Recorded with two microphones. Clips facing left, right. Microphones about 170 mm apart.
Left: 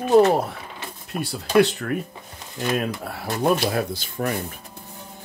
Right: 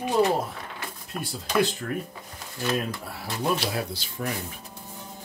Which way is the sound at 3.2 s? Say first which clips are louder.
Left 6 dB; 55° left (ahead or behind).